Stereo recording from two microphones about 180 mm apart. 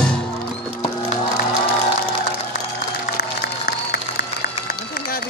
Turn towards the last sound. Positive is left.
turn(degrees=60)  # may be behind; listen again after turning